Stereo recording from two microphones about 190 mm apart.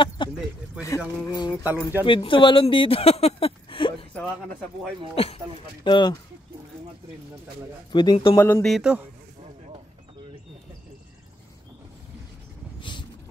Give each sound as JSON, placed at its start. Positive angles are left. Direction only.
{"t": 0.2, "sound": "speech", "side_deg": 25}
{"t": 0.8, "sound": "speech", "side_deg": 15}
{"t": 1.6, "sound": "speech", "side_deg": -10}
{"t": 2.0, "sound": "speech", "side_deg": 25}
{"t": 5.1, "sound": "speech", "side_deg": 30}
{"t": 7.9, "sound": "speech", "side_deg": 25}
{"t": 8.6, "sound": "a man's voice", "side_deg": -5}